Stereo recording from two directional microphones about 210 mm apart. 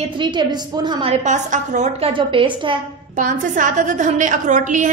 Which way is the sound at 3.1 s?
40° right (ahead or behind).